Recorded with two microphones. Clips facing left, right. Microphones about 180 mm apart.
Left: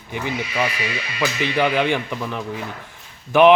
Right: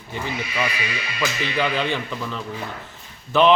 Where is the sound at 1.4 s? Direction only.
15° left (ahead or behind).